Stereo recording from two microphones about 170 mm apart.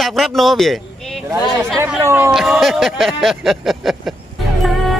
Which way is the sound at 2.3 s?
Centre (ahead or behind).